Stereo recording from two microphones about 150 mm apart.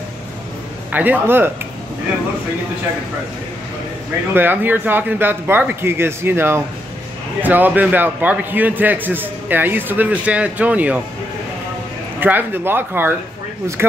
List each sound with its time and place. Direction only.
0.9 s a man's voice: 10° right (ahead or behind)
4.3 s a man's voice: 15° right (ahead or behind)
12.2 s a man's voice: 15° right (ahead or behind)